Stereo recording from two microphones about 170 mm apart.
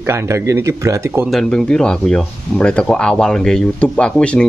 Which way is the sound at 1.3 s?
5° left (ahead or behind).